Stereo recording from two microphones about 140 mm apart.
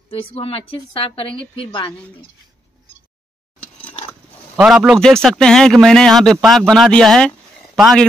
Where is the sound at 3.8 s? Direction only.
45° left (ahead or behind).